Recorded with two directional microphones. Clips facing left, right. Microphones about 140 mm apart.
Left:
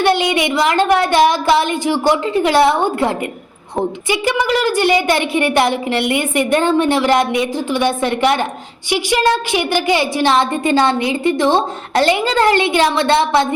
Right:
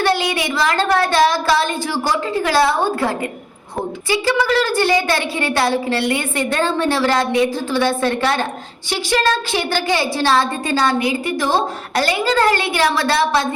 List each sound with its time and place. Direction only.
0.0 s a woman's voice: 20° left (ahead or behind)